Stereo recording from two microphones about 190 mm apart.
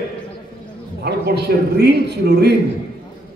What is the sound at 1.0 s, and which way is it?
A man's voice, 60° right (ahead or behind).